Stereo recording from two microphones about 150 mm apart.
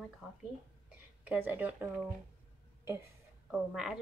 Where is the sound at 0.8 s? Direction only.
10° right (ahead or behind).